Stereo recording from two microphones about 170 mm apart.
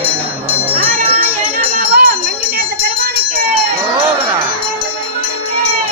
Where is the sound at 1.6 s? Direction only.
60° right (ahead or behind).